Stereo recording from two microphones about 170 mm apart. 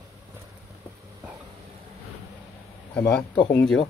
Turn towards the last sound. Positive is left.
turn(degrees=5)  # may be behind; listen again after turning